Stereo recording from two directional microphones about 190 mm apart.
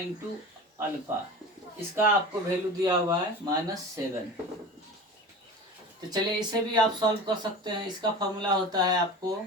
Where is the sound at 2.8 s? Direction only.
20° right (ahead or behind).